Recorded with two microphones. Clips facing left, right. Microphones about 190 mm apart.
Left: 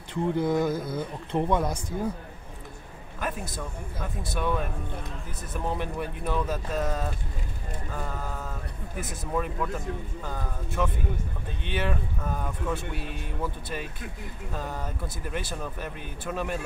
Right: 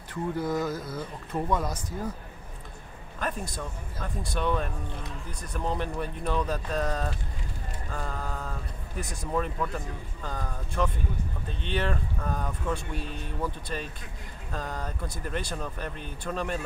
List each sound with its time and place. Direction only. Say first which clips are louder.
0.1 s speech: left 4 dB; 25° left (ahead or behind)
3.2 s speech: even; 5° left (ahead or behind)
5.8 s speech: even; 10° left (ahead or behind)